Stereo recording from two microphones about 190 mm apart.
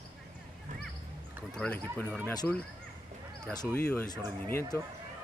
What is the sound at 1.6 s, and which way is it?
Speech, 5° left (ahead or behind).